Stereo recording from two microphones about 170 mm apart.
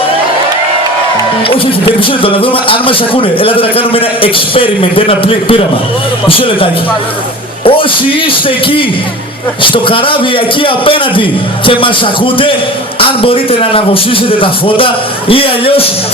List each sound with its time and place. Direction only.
2.0 s a man's voice: 30° left (ahead or behind)